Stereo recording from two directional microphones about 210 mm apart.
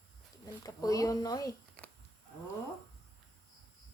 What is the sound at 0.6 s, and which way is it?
Speech, 15° left (ahead or behind).